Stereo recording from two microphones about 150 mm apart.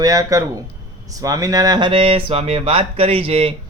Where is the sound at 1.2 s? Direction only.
20° right (ahead or behind); by 3.5 s 40° right (ahead or behind).